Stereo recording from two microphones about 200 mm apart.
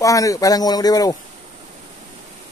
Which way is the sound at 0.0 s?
15° left (ahead or behind).